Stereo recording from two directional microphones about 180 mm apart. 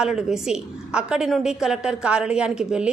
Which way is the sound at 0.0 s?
5° right (ahead or behind).